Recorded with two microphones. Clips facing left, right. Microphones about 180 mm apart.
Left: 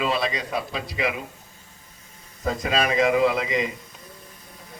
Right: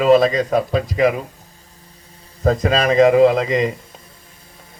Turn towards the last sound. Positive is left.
turn(degrees=-45)  # may be behind; listen again after turning